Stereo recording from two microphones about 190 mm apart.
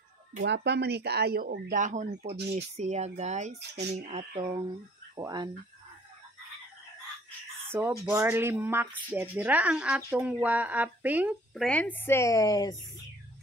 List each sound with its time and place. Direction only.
0.4 s speech: 60° right (ahead or behind); by 3.8 s 40° right (ahead or behind)
4.1 s a sound: 30° right (ahead or behind)
5.1 s speech: 20° right (ahead or behind)
7.6 s speech: 10° right (ahead or behind)
11.6 s a woman's voice: 5° left (ahead or behind)